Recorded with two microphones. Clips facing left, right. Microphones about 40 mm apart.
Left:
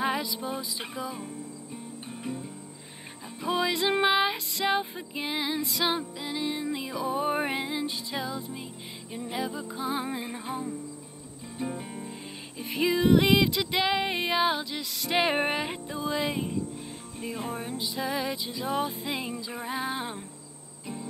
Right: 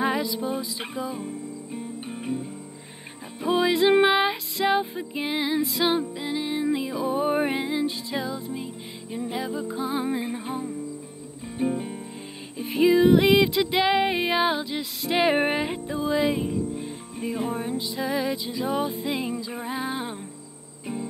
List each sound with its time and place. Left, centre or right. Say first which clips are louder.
0.0 s music: right 4 dB; centre
1.7 s cricket: right 6 dB; right
3.4 s music: right 6 dB; centre
4.3 s music: right 4 dB; centre
11.7 s music: right 6 dB; centre
15.0 s music: right 4 dB; centre
16.7 s music: right 6 dB; right
17.7 s music: right 4 dB; centre
20.8 s cricket: right 6 dB; right